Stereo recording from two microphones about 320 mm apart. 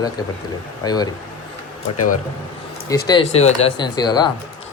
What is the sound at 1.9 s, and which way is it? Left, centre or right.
Speech, left.